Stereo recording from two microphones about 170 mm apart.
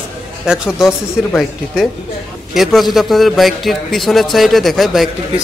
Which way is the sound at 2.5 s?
Centre (ahead or behind).